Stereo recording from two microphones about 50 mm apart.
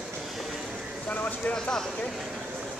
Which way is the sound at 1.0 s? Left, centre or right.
Left.